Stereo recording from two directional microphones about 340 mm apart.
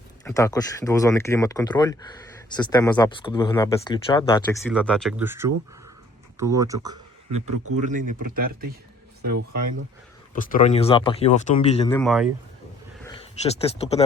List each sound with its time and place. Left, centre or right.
0.3 s speech: centre
7.3 s speech: right
7.8 s speech: right
9.2 s speech: right
10.3 s speech: left
12.0 s speech: centre
13.1 s speech: centre